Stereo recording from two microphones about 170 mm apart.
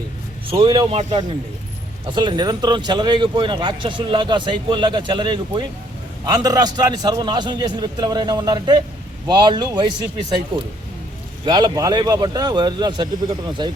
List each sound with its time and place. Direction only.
0.5 s a man's voice: 30° right (ahead or behind)
11.4 s speech: 25° right (ahead or behind)